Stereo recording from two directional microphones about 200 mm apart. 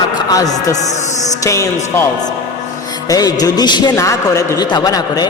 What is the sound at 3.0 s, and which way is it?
A man's voice, 20° left (ahead or behind).